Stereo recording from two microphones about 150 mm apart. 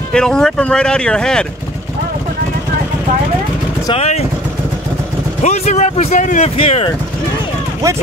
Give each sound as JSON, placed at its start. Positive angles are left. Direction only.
{"t": 0.1, "sound": "speech", "side_deg": 5}
{"t": 3.9, "sound": "speech", "side_deg": 45}
{"t": 5.4, "sound": "speech", "side_deg": 50}